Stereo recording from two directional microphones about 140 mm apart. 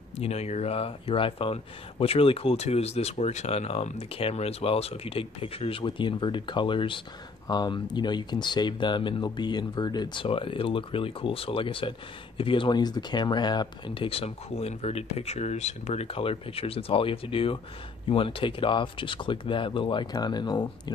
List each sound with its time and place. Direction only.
0.2 s speech: 50° left (ahead or behind); by 20.9 s 30° left (ahead or behind)